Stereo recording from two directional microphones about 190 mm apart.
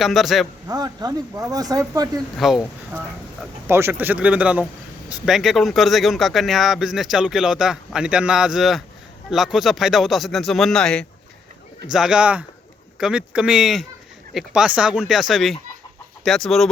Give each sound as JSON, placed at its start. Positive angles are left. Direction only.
{"t": 0.0, "sound": "speech", "side_deg": 0}
{"t": 0.7, "sound": "speech", "side_deg": -20}
{"t": 2.4, "sound": "speech", "side_deg": 0}
{"t": 3.7, "sound": "speech", "side_deg": -10}